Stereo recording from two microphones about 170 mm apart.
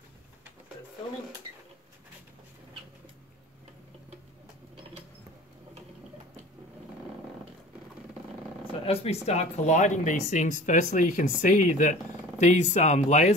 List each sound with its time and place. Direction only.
8.8 s speech: 35° left (ahead or behind)